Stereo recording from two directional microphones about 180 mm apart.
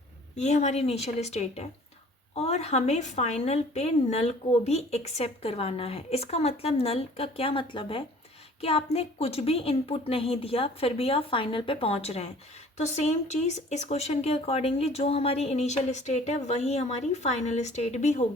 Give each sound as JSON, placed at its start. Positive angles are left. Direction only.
{"t": 0.3, "sound": "a woman's voice", "side_deg": 40}